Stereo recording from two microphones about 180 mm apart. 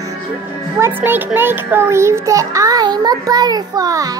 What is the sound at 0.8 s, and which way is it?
A child's voice, 10° right (ahead or behind).